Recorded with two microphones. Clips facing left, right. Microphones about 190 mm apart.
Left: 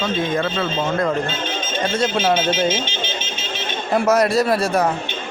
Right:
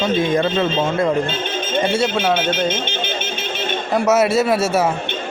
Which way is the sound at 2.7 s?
60° right (ahead or behind).